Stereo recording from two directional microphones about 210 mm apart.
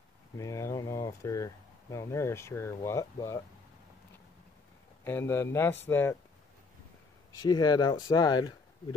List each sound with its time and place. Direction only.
0.4 s speech: 15° left (ahead or behind)
5.0 s speech: 10° left (ahead or behind)
7.3 s speech: 20° left (ahead or behind)